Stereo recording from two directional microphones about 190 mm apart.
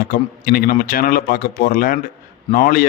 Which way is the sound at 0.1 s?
50° left (ahead or behind).